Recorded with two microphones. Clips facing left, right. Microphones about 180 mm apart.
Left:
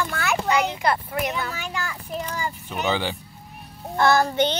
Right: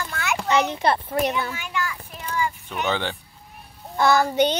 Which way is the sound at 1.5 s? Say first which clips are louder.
Right 2 dB; 40° left (ahead or behind).